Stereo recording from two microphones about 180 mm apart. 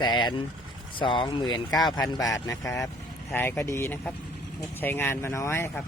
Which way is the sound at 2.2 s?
20° left (ahead or behind).